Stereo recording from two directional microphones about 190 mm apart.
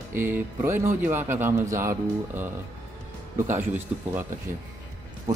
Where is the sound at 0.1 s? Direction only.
15° right (ahead or behind).